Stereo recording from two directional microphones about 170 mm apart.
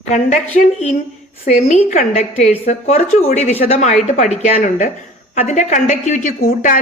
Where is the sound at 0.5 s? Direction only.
40° left (ahead or behind).